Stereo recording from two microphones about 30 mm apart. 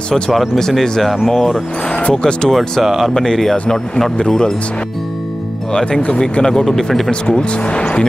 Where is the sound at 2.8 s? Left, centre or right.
Centre.